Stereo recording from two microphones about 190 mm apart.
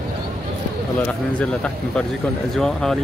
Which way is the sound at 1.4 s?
5° left (ahead or behind).